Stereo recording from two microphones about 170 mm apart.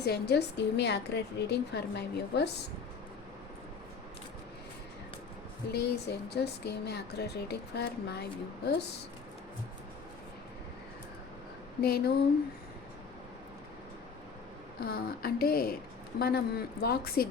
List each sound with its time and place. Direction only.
0.0 s a woman's voice: 75° left (ahead or behind)
5.7 s speech: 75° left (ahead or behind)
11.8 s speech: 70° left (ahead or behind)
14.8 s speech: 70° left (ahead or behind)